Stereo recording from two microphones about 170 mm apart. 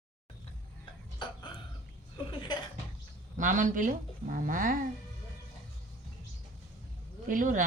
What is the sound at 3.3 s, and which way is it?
Speech, 50° right (ahead or behind).